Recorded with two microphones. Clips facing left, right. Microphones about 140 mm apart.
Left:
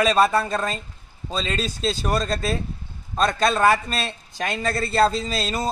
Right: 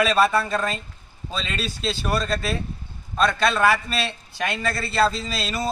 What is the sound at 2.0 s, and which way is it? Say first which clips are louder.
Speech: right 1 dB; 25° left (ahead or behind).